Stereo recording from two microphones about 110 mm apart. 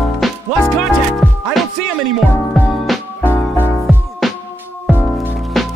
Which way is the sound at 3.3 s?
20° left (ahead or behind).